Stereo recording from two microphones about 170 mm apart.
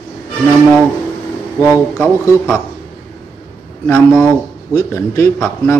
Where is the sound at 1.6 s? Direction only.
15° left (ahead or behind).